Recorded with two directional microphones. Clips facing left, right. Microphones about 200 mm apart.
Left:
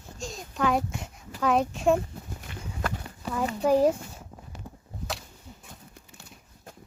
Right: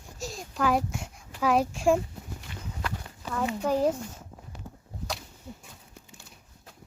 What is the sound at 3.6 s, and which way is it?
Speech, 10° left (ahead or behind).